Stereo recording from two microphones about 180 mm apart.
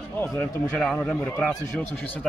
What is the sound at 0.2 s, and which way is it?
Speech, 15° left (ahead or behind).